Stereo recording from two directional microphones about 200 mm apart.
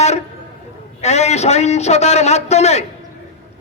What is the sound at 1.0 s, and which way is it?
Speech, 35° left (ahead or behind).